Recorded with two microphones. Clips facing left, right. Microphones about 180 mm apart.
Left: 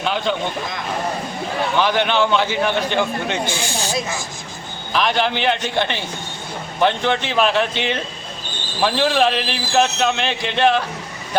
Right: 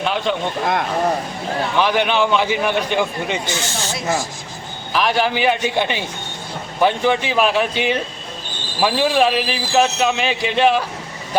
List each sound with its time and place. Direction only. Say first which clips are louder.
0.0 s a man's voice: right 1 dB; centre (ahead or behind)
0.6 s speech: right 8 dB; 65° right (ahead or behind)
1.8 s a man's voice: right 1 dB; 5° right (ahead or behind)
3.4 s speech: left 1 dB; 10° left (ahead or behind)
4.9 s a man's voice: right 1 dB; 5° right (ahead or behind)